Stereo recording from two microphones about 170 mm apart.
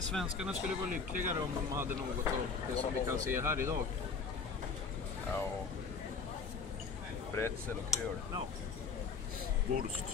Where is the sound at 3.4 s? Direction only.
15° right (ahead or behind).